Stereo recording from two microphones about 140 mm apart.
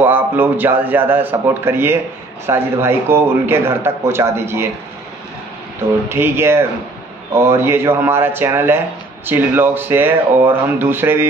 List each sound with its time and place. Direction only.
0.0 s speech: 15° right (ahead or behind)
6.0 s speech: 15° right (ahead or behind)